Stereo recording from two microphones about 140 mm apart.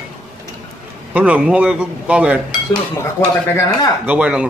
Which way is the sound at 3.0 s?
20° left (ahead or behind).